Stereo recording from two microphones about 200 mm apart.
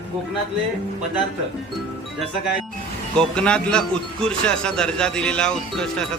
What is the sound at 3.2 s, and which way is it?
A man's voice, 5° left (ahead or behind).